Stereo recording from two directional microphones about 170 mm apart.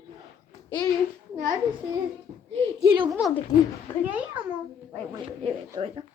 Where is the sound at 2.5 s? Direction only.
35° right (ahead or behind).